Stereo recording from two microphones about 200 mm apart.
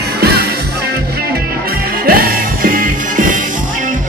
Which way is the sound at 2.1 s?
45° right (ahead or behind).